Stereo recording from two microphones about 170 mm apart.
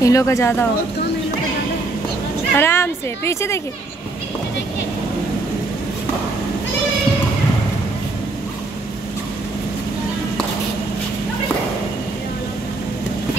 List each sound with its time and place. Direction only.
0.0 s a woman's voice: 20° left (ahead or behind)
2.5 s a woman's voice: 15° left (ahead or behind)